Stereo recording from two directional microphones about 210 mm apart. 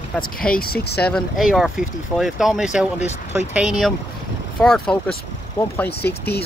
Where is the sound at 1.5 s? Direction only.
Centre (ahead or behind).